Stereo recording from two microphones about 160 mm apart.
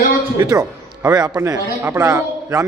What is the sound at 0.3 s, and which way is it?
A man's voice, 25° right (ahead or behind).